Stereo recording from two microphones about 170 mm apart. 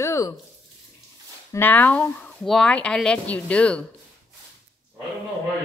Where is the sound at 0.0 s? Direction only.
20° left (ahead or behind).